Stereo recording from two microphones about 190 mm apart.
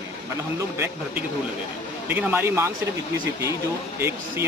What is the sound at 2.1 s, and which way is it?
Speech, 10° right (ahead or behind).